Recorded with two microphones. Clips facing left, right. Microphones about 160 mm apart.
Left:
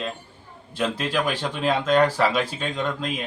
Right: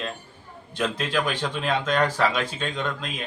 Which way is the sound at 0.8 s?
5° left (ahead or behind).